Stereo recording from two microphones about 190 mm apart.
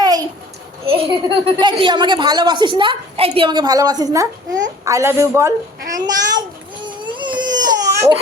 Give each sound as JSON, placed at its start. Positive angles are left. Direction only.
{"t": 0.0, "sound": "a sound", "side_deg": -20}
{"t": 0.9, "sound": "a child's voice", "side_deg": -30}
{"t": 6.8, "sound": "baby cry", "side_deg": -25}